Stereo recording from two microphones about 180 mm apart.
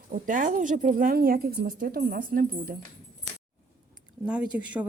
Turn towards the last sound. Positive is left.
turn(degrees=-5)  # may be behind; listen again after turning